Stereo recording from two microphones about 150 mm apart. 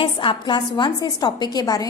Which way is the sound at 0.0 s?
35° left (ahead or behind).